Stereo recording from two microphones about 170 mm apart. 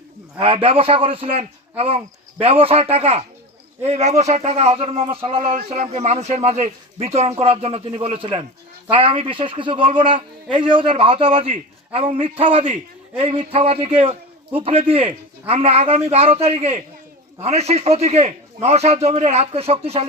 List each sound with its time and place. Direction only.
0.3 s a man's voice: 30° right (ahead or behind)